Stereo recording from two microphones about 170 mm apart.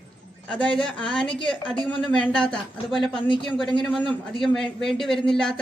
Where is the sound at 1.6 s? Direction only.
30° left (ahead or behind).